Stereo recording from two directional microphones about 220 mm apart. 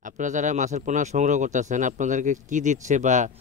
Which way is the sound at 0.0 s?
35° right (ahead or behind).